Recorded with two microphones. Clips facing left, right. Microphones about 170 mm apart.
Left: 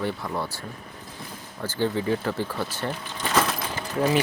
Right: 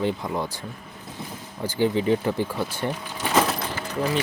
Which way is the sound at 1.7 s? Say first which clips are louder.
Right 3 dB; 15° right (ahead or behind).